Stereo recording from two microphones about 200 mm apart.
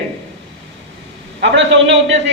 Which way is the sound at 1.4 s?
65° right (ahead or behind).